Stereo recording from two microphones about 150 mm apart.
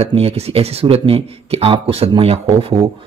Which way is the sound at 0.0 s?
40° right (ahead or behind).